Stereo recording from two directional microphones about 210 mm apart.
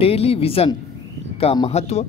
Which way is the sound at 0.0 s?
30° left (ahead or behind).